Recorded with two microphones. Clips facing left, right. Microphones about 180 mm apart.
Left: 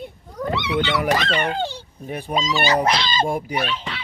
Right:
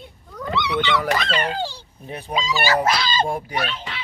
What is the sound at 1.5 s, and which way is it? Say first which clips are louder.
Speech: left 2 dB; 20° left (ahead or behind).